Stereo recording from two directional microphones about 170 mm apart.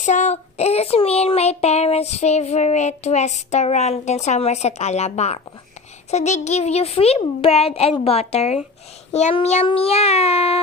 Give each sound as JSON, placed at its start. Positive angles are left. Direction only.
{"t": 0.0, "sound": "child singing", "side_deg": 45}